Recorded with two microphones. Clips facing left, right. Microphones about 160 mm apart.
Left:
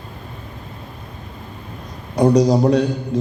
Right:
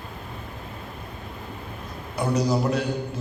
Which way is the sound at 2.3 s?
35° left (ahead or behind).